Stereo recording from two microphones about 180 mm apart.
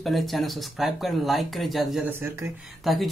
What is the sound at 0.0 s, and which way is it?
Speech, centre (ahead or behind).